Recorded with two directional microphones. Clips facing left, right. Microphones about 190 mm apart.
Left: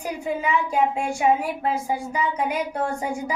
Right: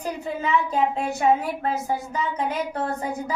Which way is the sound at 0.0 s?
10° left (ahead or behind).